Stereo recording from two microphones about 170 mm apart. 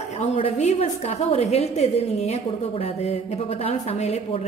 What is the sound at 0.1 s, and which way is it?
A woman's voice, 40° left (ahead or behind).